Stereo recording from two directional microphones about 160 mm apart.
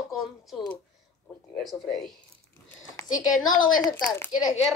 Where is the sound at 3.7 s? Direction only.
25° left (ahead or behind).